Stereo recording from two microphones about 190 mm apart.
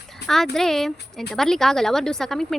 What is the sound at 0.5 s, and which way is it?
Speech, centre (ahead or behind).